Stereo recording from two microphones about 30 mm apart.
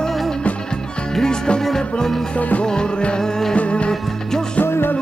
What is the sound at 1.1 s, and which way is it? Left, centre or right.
Music, left.